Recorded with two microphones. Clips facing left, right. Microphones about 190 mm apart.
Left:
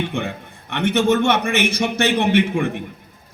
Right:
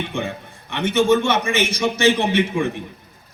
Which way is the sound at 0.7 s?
60° left (ahead or behind).